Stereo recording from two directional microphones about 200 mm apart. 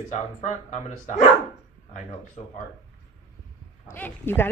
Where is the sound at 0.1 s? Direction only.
35° left (ahead or behind).